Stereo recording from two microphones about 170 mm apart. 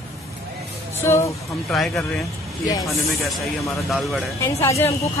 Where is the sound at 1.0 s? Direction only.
15° left (ahead or behind).